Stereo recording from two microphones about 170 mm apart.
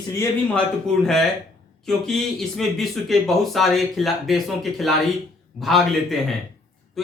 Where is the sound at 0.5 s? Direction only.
Centre (ahead or behind).